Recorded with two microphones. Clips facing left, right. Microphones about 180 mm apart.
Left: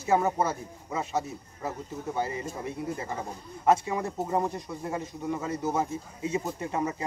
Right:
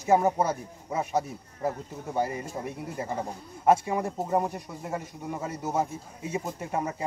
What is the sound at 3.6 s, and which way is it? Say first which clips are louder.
Speech: right 2 dB; 10° right (ahead or behind).